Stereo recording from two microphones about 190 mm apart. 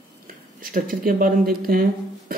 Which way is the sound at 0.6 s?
45° right (ahead or behind).